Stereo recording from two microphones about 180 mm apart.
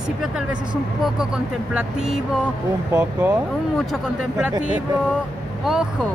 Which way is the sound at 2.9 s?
20° right (ahead or behind).